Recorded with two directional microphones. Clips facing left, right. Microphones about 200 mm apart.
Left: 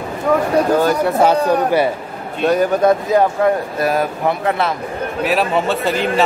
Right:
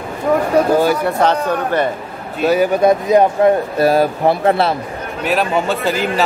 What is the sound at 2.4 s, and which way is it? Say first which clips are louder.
Speech: right 1 dB; 5° right (ahead or behind).